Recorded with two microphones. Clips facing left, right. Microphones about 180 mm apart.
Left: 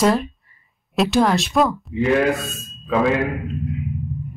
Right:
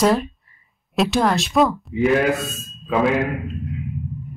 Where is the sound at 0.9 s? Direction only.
Centre (ahead or behind).